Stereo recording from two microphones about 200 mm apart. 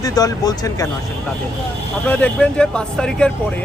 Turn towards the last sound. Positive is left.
turn(degrees=5)  # may be behind; listen again after turning